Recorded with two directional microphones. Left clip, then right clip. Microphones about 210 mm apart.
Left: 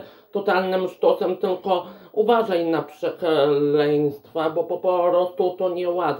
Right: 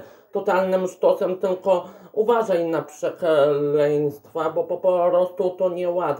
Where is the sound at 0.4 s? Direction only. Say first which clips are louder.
Right 1 dB; 5° left (ahead or behind).